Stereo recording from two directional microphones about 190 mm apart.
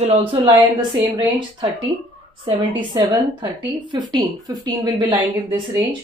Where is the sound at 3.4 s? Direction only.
25° right (ahead or behind).